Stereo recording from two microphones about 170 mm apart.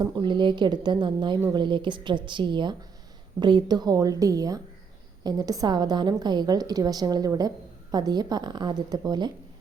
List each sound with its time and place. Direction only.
0.0 s a woman's voice: 25° right (ahead or behind)